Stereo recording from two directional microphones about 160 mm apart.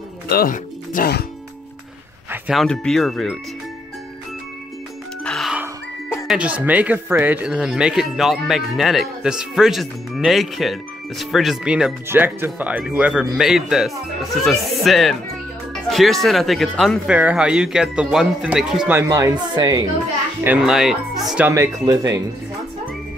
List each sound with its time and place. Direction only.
0.3 s speech: 65° left (ahead or behind)
2.3 s speech: 5° right (ahead or behind)
5.2 s music: centre (ahead or behind)
6.2 s speech: 5° right (ahead or behind)
18.9 s speech: 20° right (ahead or behind)
20.4 s speech: 5° right (ahead or behind)
21.5 s speech: 20° right (ahead or behind)